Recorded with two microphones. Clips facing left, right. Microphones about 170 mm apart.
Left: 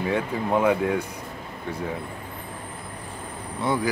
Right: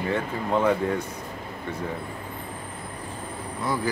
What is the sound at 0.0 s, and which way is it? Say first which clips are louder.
Speech: left 2 dB; 10° left (ahead or behind).